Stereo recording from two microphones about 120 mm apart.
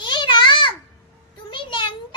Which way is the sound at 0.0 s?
40° left (ahead or behind).